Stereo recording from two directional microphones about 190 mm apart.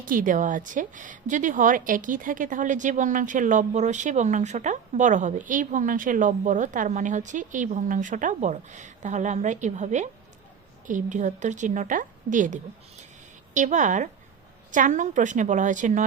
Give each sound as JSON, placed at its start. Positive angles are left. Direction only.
{"t": 0.0, "sound": "speech", "side_deg": -45}